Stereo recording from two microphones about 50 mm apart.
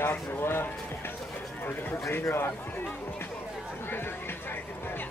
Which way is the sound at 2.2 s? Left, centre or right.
Left.